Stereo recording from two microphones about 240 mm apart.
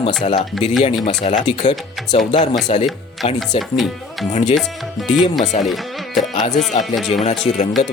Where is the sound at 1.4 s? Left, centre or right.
Centre.